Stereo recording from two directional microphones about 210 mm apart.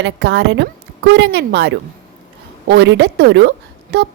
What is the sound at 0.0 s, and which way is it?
A woman's voice, 60° right (ahead or behind).